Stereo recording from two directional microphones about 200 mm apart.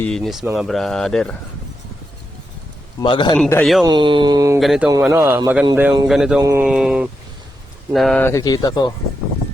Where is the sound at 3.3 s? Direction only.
5° left (ahead or behind).